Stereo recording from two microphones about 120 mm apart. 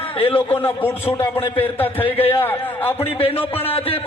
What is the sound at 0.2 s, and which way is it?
Speech, 50° left (ahead or behind).